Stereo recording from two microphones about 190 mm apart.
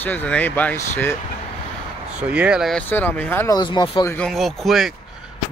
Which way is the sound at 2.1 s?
5° right (ahead or behind).